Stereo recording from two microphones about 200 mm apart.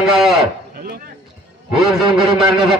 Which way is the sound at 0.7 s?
50° right (ahead or behind).